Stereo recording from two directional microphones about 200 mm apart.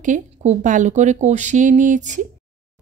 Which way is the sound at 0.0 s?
35° right (ahead or behind).